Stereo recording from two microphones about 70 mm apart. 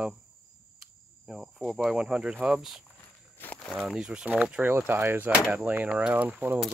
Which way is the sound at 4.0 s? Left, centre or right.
Centre.